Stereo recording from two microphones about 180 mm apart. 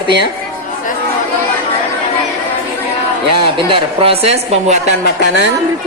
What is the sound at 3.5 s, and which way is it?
A woman's voice, 30° right (ahead or behind).